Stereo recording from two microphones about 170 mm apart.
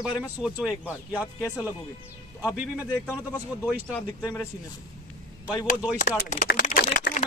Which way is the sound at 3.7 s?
Centre (ahead or behind).